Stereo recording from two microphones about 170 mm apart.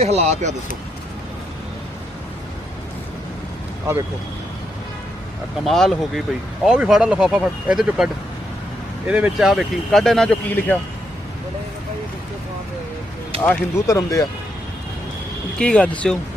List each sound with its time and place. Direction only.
0.0 s speech: 40° right (ahead or behind)
5.6 s speech: centre (ahead or behind)
13.4 s speech: 15° left (ahead or behind)
15.5 s speech: 5° left (ahead or behind)